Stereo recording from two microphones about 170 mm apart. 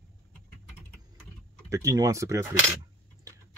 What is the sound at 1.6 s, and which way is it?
Speech, 20° right (ahead or behind).